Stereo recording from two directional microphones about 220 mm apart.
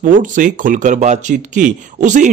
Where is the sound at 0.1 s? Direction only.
35° right (ahead or behind).